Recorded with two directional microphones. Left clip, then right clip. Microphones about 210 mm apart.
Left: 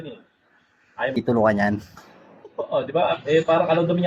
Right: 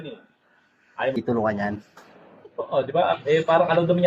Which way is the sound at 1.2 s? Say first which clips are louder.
Left 5 dB; 35° left (ahead or behind).